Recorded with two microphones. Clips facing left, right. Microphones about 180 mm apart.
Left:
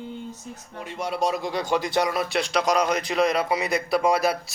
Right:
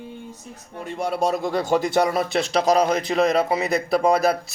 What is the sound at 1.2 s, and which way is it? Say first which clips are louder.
Speech: right 3 dB; 50° right (ahead or behind).